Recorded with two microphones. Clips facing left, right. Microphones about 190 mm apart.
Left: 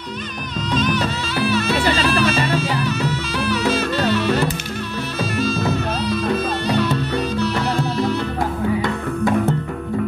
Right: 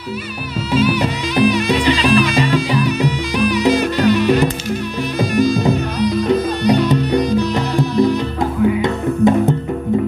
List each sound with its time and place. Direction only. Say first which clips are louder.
0.7 s music: right 4 dB; 10° right (ahead or behind)